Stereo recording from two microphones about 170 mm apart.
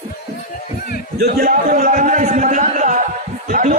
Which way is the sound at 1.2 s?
65° right (ahead or behind).